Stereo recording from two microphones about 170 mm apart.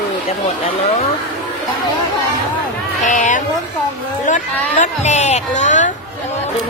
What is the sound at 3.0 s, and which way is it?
Speech, 45° left (ahead or behind).